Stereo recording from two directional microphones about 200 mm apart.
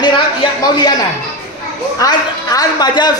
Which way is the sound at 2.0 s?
20° left (ahead or behind).